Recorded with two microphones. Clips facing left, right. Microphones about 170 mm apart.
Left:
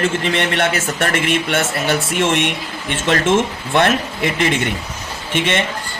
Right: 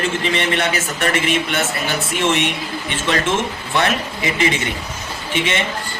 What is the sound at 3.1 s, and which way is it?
Speech, 55° left (ahead or behind).